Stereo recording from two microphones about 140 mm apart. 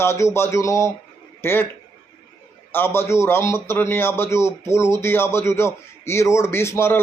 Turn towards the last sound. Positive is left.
turn(degrees=15)  # may be behind; listen again after turning